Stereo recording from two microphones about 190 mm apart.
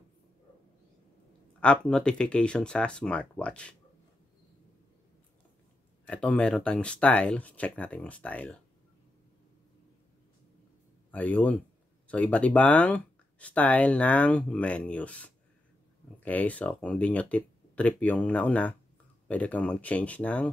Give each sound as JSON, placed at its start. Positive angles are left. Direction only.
{"t": 1.6, "sound": "speech", "side_deg": 5}
{"t": 6.0, "sound": "speech", "side_deg": 5}
{"t": 11.1, "sound": "speech", "side_deg": 10}